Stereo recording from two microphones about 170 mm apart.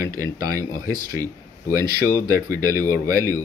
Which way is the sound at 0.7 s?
20° right (ahead or behind).